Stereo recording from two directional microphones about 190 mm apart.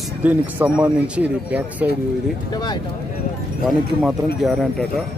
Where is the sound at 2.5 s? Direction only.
20° left (ahead or behind).